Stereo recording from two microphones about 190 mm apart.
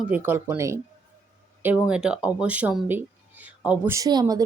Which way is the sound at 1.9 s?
5° right (ahead or behind).